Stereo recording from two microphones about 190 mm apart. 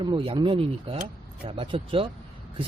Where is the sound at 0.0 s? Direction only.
25° right (ahead or behind).